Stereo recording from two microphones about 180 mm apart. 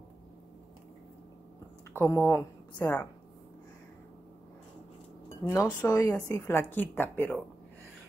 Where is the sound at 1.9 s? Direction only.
15° left (ahead or behind).